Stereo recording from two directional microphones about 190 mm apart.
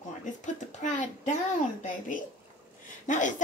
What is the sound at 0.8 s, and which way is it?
Speech, 40° left (ahead or behind).